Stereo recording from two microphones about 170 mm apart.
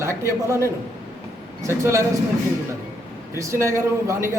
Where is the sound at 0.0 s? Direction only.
15° right (ahead or behind).